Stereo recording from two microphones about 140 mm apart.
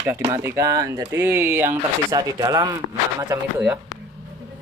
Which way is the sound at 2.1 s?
25° right (ahead or behind).